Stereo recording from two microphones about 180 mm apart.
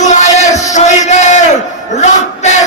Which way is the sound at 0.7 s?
40° left (ahead or behind).